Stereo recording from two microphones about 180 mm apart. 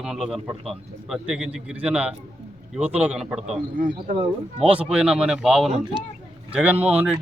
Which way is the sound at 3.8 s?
50° right (ahead or behind).